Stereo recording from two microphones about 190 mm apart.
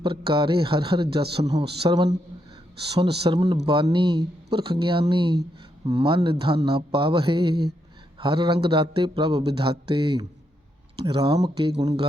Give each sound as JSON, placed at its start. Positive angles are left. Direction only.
{"t": 0.0, "sound": "speech", "side_deg": -25}